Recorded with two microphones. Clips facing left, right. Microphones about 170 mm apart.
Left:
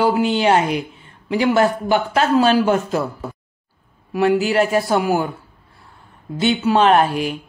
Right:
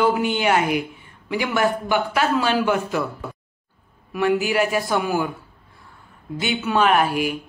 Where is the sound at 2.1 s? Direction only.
30° left (ahead or behind).